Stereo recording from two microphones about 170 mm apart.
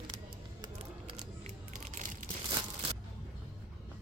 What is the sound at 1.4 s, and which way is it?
Crushing, 45° right (ahead or behind).